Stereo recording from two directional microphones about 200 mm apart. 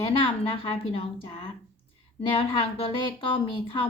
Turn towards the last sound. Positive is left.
turn(degrees=25)  # may be behind; listen again after turning